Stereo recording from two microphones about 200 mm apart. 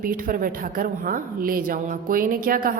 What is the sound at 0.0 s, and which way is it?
A woman's voice, 45° right (ahead or behind).